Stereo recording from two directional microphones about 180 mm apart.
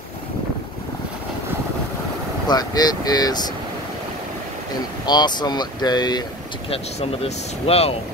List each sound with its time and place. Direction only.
2.4 s speech: 20° left (ahead or behind)
5.0 s speech: 25° left (ahead or behind)
6.7 s speech: 35° left (ahead or behind)